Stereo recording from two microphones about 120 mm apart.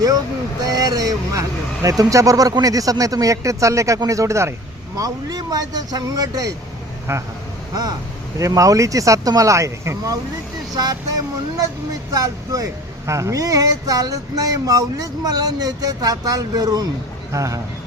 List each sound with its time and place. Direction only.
0.6 s speech: 30° right (ahead or behind)
8.4 s speech: 30° right (ahead or behind)